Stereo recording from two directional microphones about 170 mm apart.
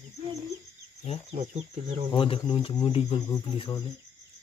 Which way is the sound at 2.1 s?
30° left (ahead or behind).